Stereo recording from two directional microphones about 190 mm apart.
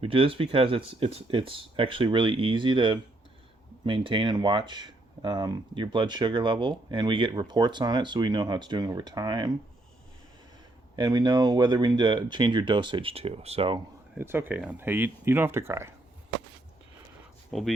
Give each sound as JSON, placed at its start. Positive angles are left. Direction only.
{"t": 0.0, "sound": "speech", "side_deg": -30}
{"t": 10.9, "sound": "speech", "side_deg": -20}
{"t": 14.2, "sound": "speech", "side_deg": -10}
{"t": 17.5, "sound": "speech", "side_deg": 0}